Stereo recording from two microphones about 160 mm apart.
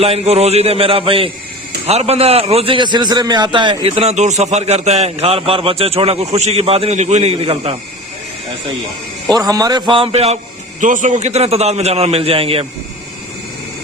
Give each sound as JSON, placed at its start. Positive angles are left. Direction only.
{"t": 0.0, "sound": "a man's voice", "side_deg": -40}
{"t": 9.3, "sound": "a man's voice", "side_deg": -25}
{"t": 10.8, "sound": "a man's voice", "side_deg": -50}